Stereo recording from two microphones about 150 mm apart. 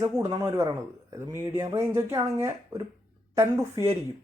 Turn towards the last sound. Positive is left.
turn(degrees=-20)  # may be behind; listen again after turning